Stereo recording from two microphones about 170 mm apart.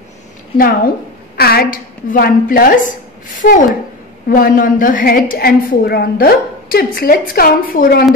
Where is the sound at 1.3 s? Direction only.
65° left (ahead or behind).